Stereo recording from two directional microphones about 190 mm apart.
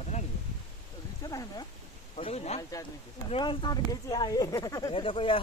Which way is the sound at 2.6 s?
15° left (ahead or behind).